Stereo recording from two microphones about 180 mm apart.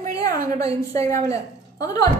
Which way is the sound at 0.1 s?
20° left (ahead or behind).